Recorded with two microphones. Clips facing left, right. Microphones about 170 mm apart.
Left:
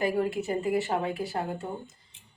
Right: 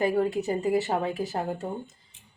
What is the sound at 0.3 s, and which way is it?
A woman's voice, 40° right (ahead or behind).